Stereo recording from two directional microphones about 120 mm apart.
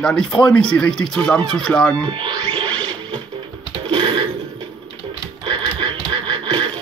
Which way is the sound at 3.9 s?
45° right (ahead or behind).